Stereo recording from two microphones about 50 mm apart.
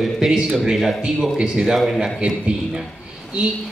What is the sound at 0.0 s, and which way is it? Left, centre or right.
A man's voice, centre.